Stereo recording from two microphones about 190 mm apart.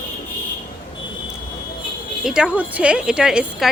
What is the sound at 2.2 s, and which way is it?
Speech, 5° right (ahead or behind).